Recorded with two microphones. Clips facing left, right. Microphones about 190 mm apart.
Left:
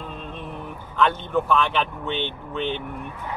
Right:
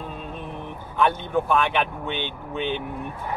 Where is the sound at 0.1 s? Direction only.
10° right (ahead or behind).